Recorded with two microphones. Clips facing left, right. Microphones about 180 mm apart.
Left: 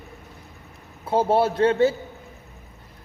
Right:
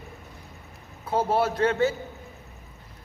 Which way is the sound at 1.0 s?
30° left (ahead or behind).